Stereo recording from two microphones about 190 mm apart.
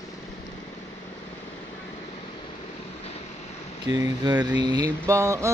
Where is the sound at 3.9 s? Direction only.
20° right (ahead or behind).